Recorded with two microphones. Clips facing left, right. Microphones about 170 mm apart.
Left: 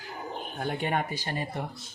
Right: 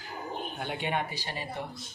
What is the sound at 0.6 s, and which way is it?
Speech, 45° left (ahead or behind).